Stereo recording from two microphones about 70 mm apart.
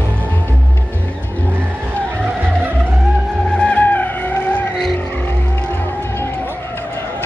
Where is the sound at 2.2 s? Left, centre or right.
Right.